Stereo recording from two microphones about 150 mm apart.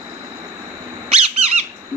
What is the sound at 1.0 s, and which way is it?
Squeak, 40° right (ahead or behind).